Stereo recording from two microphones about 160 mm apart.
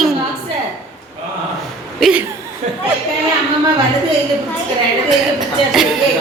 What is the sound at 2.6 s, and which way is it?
Chatter, 50° right (ahead or behind).